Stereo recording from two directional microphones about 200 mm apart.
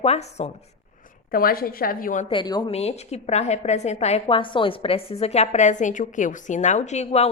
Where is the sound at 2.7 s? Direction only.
30° left (ahead or behind).